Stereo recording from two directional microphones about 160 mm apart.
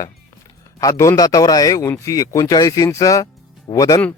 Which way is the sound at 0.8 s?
20° left (ahead or behind).